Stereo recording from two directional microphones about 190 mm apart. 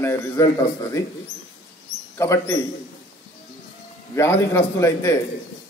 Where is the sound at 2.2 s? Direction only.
15° left (ahead or behind).